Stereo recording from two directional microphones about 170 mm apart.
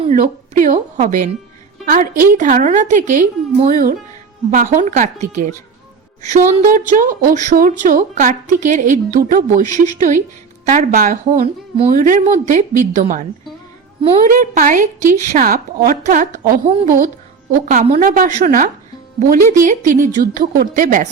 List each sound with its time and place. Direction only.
0.1 s speech: 50° right (ahead or behind)
11.3 s speech: 35° right (ahead or behind)
11.9 s speech: 50° right (ahead or behind)
14.3 s a woman's voice: 55° right (ahead or behind)